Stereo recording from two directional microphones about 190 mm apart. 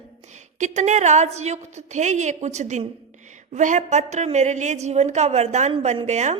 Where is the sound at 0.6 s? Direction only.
40° right (ahead or behind).